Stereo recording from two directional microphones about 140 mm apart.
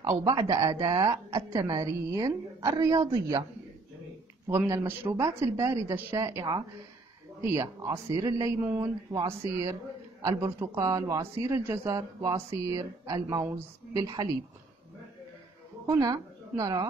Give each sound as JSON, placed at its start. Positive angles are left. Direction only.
{"t": 0.0, "sound": "a woman's voice", "side_deg": -25}
{"t": 4.5, "sound": "a woman's voice", "side_deg": -20}
{"t": 9.1, "sound": "a woman's voice", "side_deg": -25}
{"t": 15.9, "sound": "a woman's voice", "side_deg": -25}